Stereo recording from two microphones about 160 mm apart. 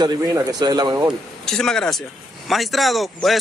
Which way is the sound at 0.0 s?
25° right (ahead or behind).